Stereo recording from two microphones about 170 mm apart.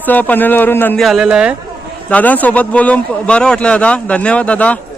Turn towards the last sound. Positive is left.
turn(degrees=10)  # may be behind; listen again after turning